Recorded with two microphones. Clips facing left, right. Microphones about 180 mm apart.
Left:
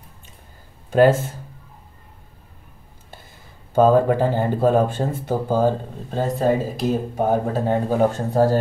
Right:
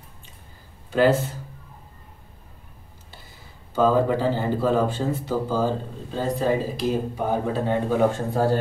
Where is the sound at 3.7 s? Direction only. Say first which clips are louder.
Left 4 dB; 50° left (ahead or behind).